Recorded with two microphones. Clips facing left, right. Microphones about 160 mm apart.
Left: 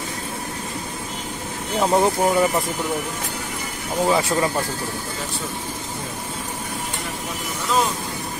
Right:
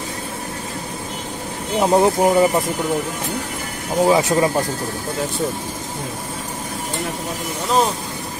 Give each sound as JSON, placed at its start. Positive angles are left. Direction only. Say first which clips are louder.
{"t": 1.8, "sound": "speech", "louder": "right 3 dB", "side_deg": -15}
{"t": 4.0, "sound": "speech", "louder": "right 4 dB", "side_deg": -20}